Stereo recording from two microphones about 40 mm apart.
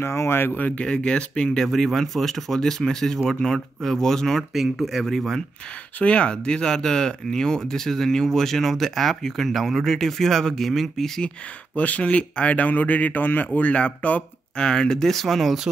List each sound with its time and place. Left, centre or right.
0.0 s speech: left
0.5 s speech: left
0.7 s speech: left
1.6 s speech: centre
5.9 s speech: left; by 11.1 s centre
11.7 s speech: left
14.6 s speech: left; by 15.6 s centre